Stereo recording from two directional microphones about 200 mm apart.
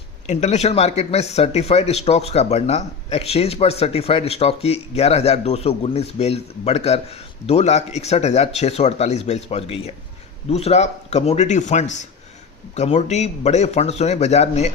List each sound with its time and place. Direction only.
0.3 s speech: 35° left (ahead or behind)